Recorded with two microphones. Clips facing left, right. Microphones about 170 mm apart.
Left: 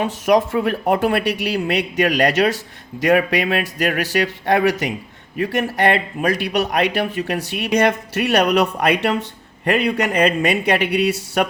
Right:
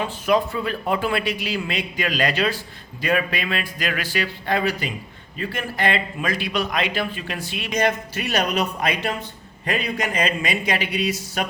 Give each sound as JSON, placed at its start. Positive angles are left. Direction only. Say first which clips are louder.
{"t": 0.0, "sound": "speech", "louder": "left 4 dB", "side_deg": 75}